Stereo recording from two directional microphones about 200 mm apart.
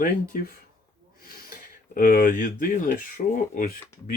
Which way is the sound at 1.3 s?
45° left (ahead or behind).